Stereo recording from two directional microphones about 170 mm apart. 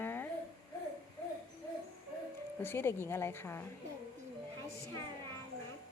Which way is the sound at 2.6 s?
15° left (ahead or behind).